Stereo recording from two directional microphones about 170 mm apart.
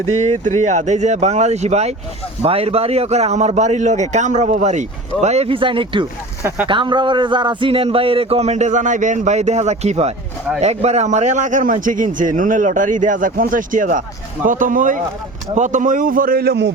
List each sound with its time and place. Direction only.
0.2 s a man's voice: 45° right (ahead or behind); by 16.7 s 80° right